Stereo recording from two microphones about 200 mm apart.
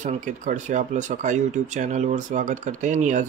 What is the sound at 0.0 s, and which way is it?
Speech, 40° right (ahead or behind).